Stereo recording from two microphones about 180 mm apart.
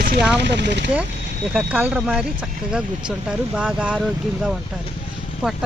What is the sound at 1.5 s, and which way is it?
Speech, 5° right (ahead or behind).